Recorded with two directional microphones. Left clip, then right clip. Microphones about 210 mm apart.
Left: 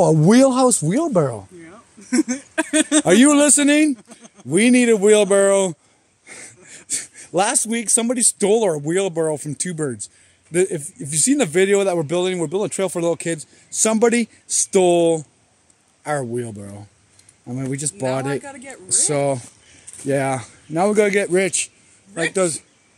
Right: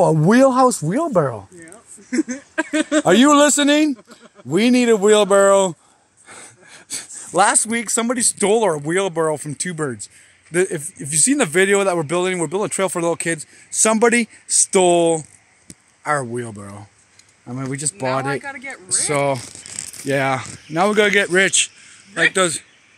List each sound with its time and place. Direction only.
0.0 s speech: 5° left (ahead or behind)
1.6 s a sound: 50° left (ahead or behind)
3.1 s speech: centre (ahead or behind)
3.9 s a sound: 45° left (ahead or behind)
4.5 s speech: centre (ahead or behind)
18.4 s speech: 30° left (ahead or behind)
18.9 s speech: 5° left (ahead or behind)